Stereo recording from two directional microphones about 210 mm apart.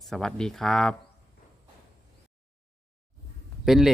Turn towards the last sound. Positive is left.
turn(degrees=0)  # may be behind; listen again after turning